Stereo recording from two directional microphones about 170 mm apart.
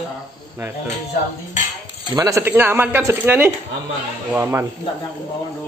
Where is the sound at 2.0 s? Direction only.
20° right (ahead or behind).